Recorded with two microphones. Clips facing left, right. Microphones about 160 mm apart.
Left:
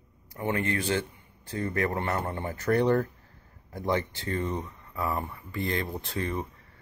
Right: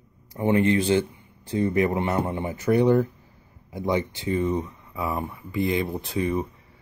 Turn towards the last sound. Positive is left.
turn(degrees=-10)  # may be behind; listen again after turning